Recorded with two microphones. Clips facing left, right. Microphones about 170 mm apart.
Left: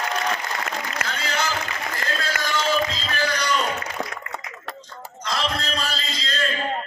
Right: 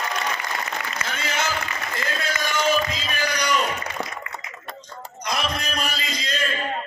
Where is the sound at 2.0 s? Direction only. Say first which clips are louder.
Left 1 dB; 55° left (ahead or behind).